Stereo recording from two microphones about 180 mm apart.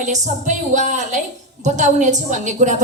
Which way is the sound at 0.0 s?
40° right (ahead or behind).